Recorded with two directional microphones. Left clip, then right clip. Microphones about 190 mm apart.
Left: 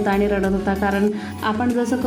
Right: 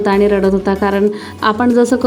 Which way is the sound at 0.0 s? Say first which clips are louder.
Right 8 dB; 35° right (ahead or behind).